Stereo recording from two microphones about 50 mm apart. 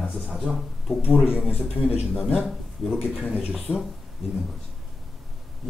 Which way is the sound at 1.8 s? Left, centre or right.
Right.